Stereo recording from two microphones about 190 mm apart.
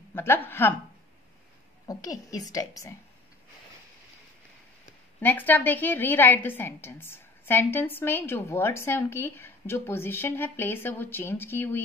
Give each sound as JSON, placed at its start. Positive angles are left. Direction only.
{"t": 0.1, "sound": "a woman's voice", "side_deg": 10}
{"t": 1.9, "sound": "a woman's voice", "side_deg": 20}
{"t": 5.2, "sound": "a woman's voice", "side_deg": 10}